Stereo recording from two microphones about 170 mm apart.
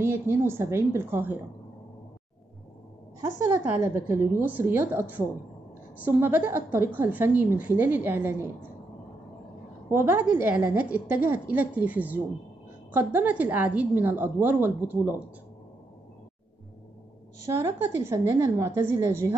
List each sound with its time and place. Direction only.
0.0 s a woman's voice: 15° right (ahead or behind)
3.2 s a woman's voice: 15° right (ahead or behind)
9.8 s a woman's voice: 15° right (ahead or behind)
17.5 s a woman's voice: 15° right (ahead or behind)